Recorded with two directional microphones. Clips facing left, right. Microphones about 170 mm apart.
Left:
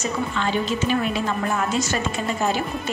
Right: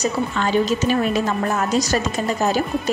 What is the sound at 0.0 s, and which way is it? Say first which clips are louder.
A woman's voice: right 3 dB; 40° right (ahead or behind).